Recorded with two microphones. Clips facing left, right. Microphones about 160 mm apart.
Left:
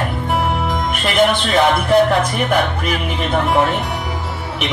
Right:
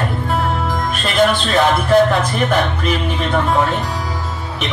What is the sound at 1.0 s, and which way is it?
Speech, 20° left (ahead or behind).